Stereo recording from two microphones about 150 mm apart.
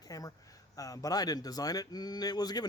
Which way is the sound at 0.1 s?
25° left (ahead or behind).